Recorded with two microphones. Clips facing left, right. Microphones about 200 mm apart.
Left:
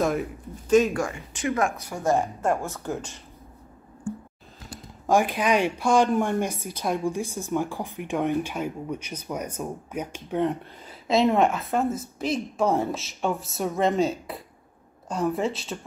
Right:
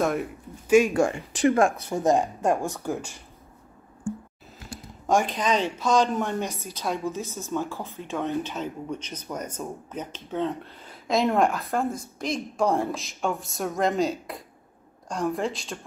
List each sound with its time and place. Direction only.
0.0 s speech: centre (ahead or behind)
0.9 s speech: 30° right (ahead or behind); by 3.2 s 10° right (ahead or behind)
5.0 s speech: 10° left (ahead or behind)
11.1 s speech: centre (ahead or behind)